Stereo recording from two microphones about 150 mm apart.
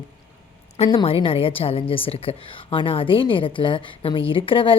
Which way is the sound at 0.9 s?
35° left (ahead or behind).